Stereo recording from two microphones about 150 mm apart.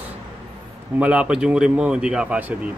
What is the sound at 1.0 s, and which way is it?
A man's voice, 10° right (ahead or behind).